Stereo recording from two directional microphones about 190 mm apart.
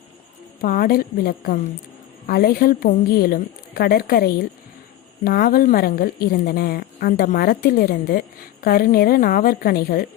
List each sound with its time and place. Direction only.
0.6 s a woman's voice: 50° left (ahead or behind)